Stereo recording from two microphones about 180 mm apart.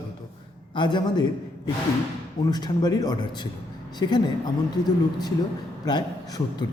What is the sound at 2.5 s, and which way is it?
A man's voice, 20° left (ahead or behind).